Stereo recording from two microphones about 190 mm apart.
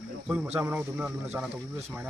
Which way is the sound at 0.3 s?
5° right (ahead or behind).